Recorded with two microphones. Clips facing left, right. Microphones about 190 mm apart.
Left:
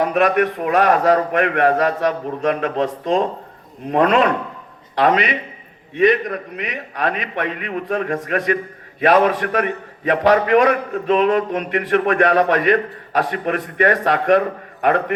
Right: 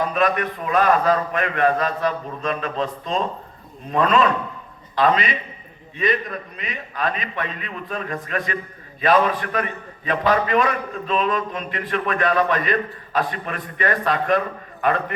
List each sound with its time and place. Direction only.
0.0 s a man's voice: 65° left (ahead or behind)